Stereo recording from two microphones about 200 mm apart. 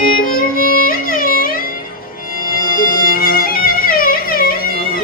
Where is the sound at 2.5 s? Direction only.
45° left (ahead or behind).